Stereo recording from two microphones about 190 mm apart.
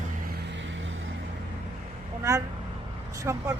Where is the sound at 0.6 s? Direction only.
85° right.